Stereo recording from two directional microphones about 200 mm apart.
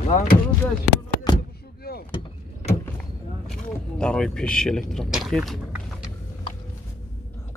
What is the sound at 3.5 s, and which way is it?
Speech, 5° left (ahead or behind).